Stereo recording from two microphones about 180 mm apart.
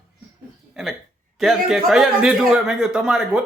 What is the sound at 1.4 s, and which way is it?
A man's voice, centre (ahead or behind).